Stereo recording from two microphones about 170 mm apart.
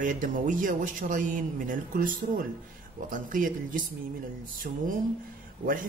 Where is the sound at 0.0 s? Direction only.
50° right (ahead or behind).